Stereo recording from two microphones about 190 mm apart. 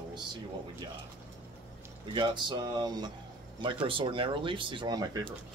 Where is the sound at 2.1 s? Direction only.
25° right (ahead or behind).